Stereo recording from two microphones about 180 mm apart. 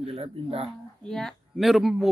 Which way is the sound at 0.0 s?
35° right (ahead or behind).